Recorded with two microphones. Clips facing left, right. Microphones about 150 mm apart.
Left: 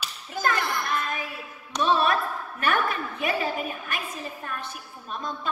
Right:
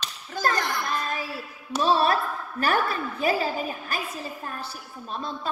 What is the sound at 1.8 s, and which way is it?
A woman's voice, 35° right (ahead or behind).